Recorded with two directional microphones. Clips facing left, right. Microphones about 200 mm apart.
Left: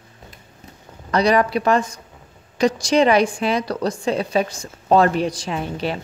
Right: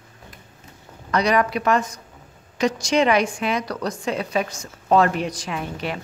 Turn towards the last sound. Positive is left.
turn(degrees=30)  # may be behind; listen again after turning